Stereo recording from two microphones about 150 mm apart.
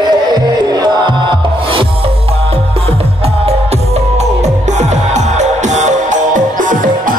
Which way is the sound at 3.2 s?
45° right (ahead or behind).